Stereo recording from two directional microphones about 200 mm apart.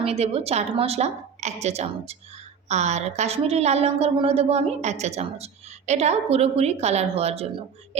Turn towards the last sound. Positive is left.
turn(degrees=-30)  # may be behind; listen again after turning